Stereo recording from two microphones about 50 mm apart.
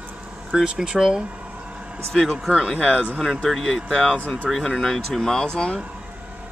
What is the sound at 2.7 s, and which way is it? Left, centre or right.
Speech, left.